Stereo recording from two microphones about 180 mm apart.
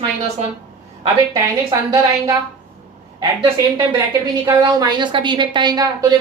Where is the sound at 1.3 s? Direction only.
20° right (ahead or behind).